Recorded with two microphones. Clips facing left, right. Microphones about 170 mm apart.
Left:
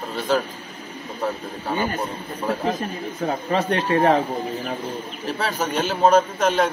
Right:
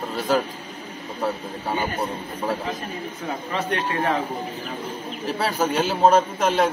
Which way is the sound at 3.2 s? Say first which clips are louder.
Left 5 dB; 35° left (ahead or behind).